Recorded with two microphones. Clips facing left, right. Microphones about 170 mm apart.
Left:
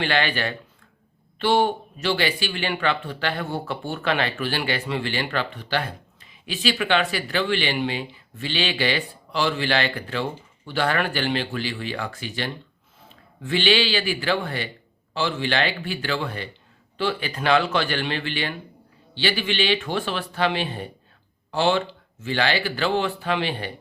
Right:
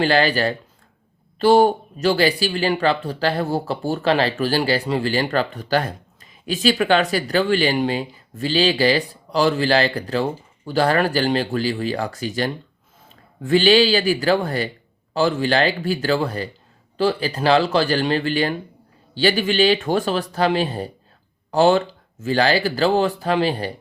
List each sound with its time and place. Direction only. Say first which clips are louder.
0.0 s a man's voice: right 6 dB; 35° right (ahead or behind)